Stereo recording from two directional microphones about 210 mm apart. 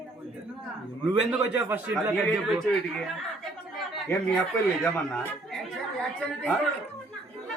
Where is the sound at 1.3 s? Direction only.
5° right (ahead or behind).